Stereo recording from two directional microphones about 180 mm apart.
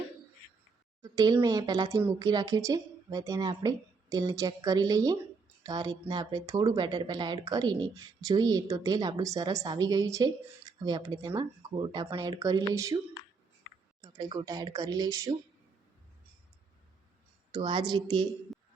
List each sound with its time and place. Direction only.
1.0 s speech: 20° right (ahead or behind)
14.0 s speech: 20° right (ahead or behind)
17.5 s speech: 25° right (ahead or behind)